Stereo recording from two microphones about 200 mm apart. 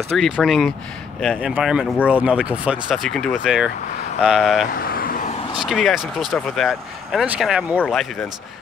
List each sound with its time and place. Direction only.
0.1 s speech: centre (ahead or behind)
4.7 s vehicle: 45° left (ahead or behind)
5.6 s speech: centre (ahead or behind)